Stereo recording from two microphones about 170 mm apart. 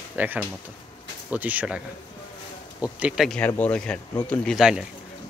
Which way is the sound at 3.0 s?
Centre (ahead or behind).